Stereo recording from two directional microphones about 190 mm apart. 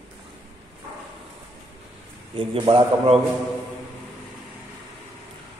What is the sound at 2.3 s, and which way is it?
Speech, 25° right (ahead or behind).